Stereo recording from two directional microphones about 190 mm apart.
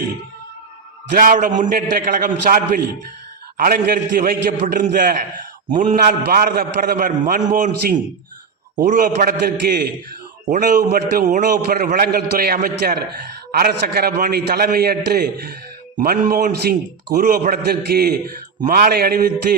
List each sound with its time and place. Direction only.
1.1 s a man's voice: 45° right (ahead or behind)